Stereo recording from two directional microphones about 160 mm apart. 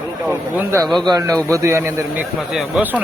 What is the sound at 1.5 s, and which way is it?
Speech, 20° right (ahead or behind).